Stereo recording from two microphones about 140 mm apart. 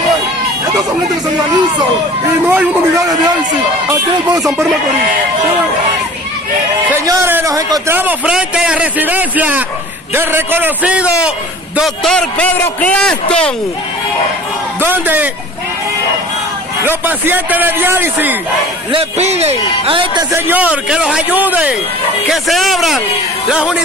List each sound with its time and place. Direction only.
2.4 s a man's voice: 15° right (ahead or behind)
3.0 s speech: 25° right (ahead or behind)
7.1 s a man's voice: 20° right (ahead or behind)
8.0 s a man's voice: 10° right (ahead or behind)
12.0 s a man's voice: 5° left (ahead or behind)
14.8 s a man's voice: 15° right (ahead or behind)
16.8 s a man's voice: 15° right (ahead or behind)
18.9 s a man's voice: 45° right (ahead or behind)
20.3 s a man's voice: 15° right (ahead or behind)
22.3 s a man's voice: centre (ahead or behind)